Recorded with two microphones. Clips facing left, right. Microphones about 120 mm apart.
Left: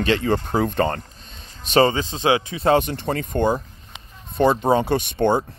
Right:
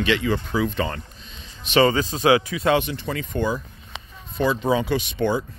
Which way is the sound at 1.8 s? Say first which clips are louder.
Right 1 dB; 25° left (ahead or behind).